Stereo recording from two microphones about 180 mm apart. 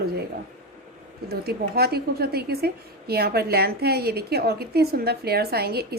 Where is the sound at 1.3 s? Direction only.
60° right (ahead or behind).